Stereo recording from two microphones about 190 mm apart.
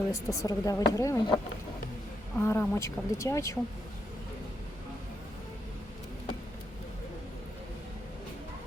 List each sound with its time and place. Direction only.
0.1 s speech: 15° left (ahead or behind)
2.4 s speech: 15° left (ahead or behind)